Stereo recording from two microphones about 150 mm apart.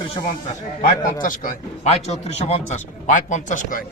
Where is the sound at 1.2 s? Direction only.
65° left (ahead or behind).